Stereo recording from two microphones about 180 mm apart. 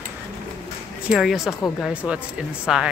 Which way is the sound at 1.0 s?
Centre (ahead or behind).